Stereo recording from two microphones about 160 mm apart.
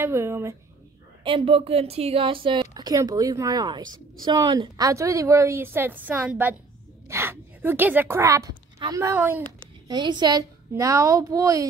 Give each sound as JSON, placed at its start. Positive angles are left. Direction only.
{"t": 0.0, "sound": "speech", "side_deg": -15}
{"t": 1.2, "sound": "a woman's voice", "side_deg": -35}
{"t": 9.8, "sound": "a woman's voice", "side_deg": -25}